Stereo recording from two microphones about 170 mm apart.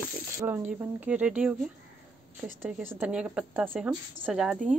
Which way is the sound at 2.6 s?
15° right (ahead or behind).